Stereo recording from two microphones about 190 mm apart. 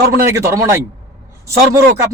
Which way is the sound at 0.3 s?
15° right (ahead or behind).